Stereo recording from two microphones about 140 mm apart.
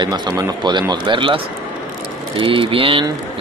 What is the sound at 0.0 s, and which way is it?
Speech, 30° right (ahead or behind).